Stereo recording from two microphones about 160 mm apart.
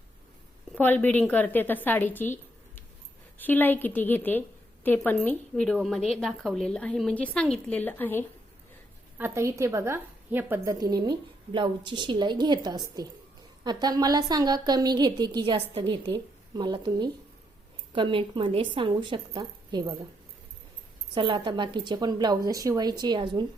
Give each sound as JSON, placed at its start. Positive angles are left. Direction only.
{"t": 0.8, "sound": "a woman's voice", "side_deg": 10}
{"t": 9.1, "sound": "a woman's voice", "side_deg": -15}
{"t": 21.2, "sound": "a woman's voice", "side_deg": -30}